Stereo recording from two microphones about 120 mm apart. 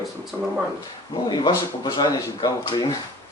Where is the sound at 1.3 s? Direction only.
35° left (ahead or behind).